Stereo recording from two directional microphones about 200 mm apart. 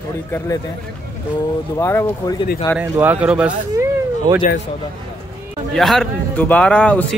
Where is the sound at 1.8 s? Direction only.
15° left (ahead or behind).